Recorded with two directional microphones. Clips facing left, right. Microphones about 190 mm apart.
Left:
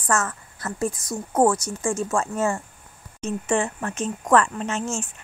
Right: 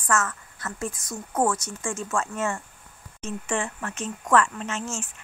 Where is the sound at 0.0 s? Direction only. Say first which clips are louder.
Left 1 dB; 35° left (ahead or behind).